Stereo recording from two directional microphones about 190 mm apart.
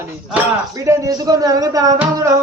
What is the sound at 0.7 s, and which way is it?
Speech, 15° right (ahead or behind).